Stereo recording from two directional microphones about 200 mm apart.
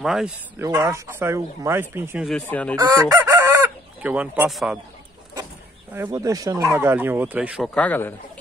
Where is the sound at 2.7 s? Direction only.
20° right (ahead or behind).